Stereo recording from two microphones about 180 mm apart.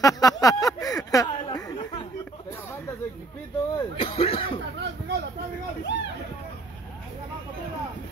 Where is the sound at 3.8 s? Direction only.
30° left (ahead or behind).